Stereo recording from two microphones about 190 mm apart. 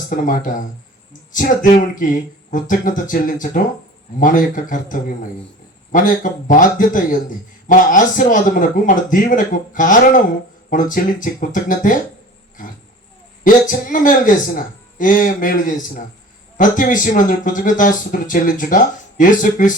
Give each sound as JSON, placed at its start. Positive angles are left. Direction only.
{"t": 0.1, "sound": "a man's voice", "side_deg": 45}
{"t": 13.4, "sound": "a man's voice", "side_deg": 45}